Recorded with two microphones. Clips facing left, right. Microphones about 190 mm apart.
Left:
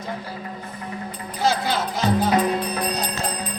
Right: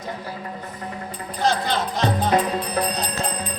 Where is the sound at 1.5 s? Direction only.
5° left (ahead or behind).